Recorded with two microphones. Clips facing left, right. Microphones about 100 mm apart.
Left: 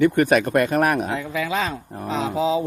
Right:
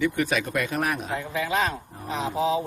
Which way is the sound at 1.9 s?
75° left (ahead or behind).